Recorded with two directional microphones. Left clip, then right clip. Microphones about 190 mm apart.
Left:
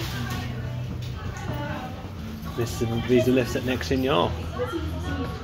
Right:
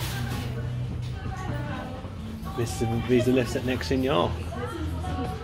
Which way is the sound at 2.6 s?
Centre (ahead or behind).